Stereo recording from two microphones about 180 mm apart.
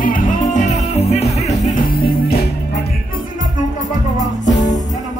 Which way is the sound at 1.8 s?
60° left (ahead or behind).